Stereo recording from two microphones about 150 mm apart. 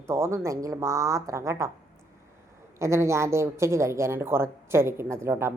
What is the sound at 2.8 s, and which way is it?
Speech, 20° right (ahead or behind).